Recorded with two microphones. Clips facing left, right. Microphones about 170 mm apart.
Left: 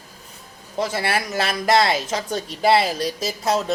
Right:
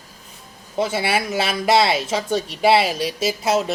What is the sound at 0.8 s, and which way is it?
Speech, 5° right (ahead or behind).